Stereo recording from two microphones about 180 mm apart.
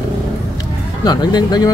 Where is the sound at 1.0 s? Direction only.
20° left (ahead or behind).